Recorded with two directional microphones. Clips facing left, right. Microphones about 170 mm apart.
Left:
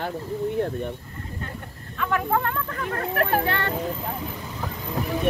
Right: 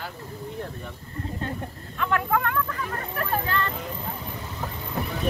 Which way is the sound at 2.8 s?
70° left (ahead or behind).